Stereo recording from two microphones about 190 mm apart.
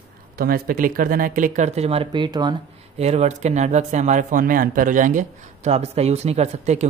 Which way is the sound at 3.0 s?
35° right (ahead or behind).